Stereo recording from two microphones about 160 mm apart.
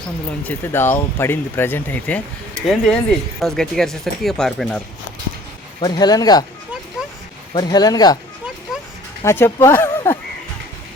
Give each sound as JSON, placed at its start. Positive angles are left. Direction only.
{"t": 0.4, "sound": "speech", "side_deg": 15}
{"t": 5.8, "sound": "speech", "side_deg": 25}
{"t": 7.5, "sound": "speech", "side_deg": 25}
{"t": 9.2, "sound": "speech", "side_deg": 15}